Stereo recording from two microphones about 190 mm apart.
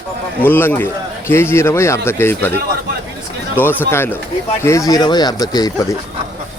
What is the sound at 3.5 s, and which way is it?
A man's voice, 10° left (ahead or behind).